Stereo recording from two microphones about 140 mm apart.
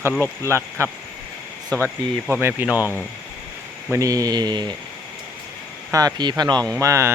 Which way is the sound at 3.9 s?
25° right (ahead or behind).